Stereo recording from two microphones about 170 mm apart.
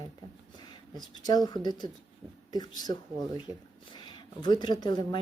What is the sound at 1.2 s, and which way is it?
Speech, 25° left (ahead or behind).